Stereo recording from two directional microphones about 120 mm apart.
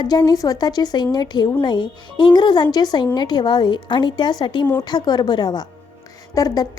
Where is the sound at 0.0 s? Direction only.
35° left (ahead or behind).